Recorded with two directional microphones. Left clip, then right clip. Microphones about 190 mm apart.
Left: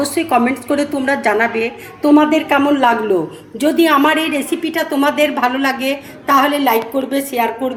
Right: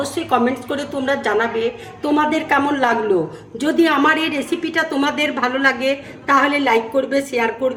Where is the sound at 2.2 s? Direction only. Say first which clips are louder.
Left 3 dB; 5° left (ahead or behind).